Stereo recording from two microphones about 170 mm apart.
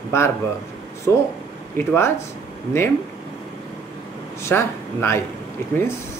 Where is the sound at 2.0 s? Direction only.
15° left (ahead or behind).